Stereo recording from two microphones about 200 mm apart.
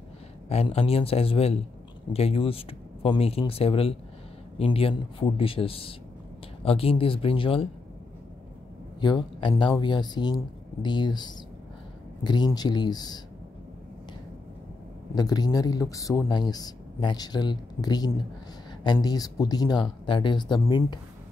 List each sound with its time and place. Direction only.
0.5 s speech: 30° left (ahead or behind)
9.0 s speech: 20° left (ahead or behind)
15.1 s speech: 20° left (ahead or behind)